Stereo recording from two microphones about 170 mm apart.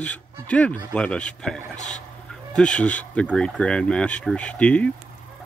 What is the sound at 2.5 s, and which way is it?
Speech, 5° left (ahead or behind).